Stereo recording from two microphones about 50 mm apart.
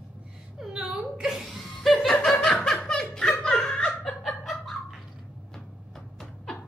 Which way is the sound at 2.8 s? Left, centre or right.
Centre.